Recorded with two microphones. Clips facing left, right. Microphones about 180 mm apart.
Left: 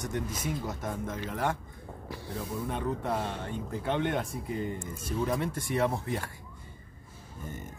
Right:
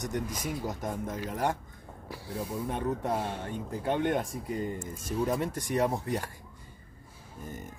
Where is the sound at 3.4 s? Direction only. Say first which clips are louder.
Right 1 dB; 45° right (ahead or behind).